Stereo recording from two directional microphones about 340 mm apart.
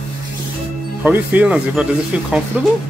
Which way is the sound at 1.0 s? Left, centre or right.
Centre.